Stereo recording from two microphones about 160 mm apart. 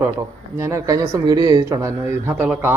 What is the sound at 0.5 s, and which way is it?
Speech, 20° right (ahead or behind).